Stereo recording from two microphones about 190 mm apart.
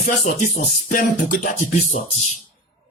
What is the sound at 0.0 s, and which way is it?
Speech, 45° left (ahead or behind).